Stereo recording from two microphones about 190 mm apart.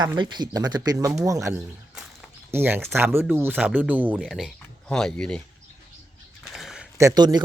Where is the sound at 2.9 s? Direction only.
10° right (ahead or behind); by 5.4 s 5° left (ahead or behind).